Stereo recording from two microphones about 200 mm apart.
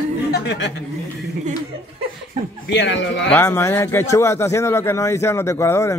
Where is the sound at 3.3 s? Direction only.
10° left (ahead or behind).